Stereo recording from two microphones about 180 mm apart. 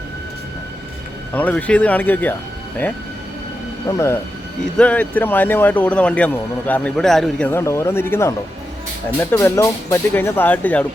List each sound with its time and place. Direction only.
1.3 s speech: 10° left (ahead or behind)
3.8 s speech: 15° left (ahead or behind)